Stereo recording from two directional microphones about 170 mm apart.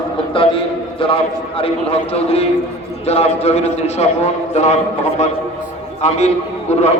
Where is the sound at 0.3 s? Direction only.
30° left (ahead or behind).